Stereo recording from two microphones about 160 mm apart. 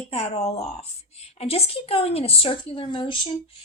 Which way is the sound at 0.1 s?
40° left (ahead or behind).